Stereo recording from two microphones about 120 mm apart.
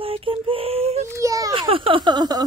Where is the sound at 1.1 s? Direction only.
30° right (ahead or behind).